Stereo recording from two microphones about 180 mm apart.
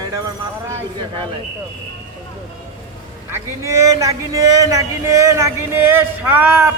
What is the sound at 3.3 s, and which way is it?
Speech, 15° right (ahead or behind).